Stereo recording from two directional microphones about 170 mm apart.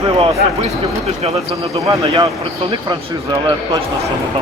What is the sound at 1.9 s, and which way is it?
Speech, 30° right (ahead or behind).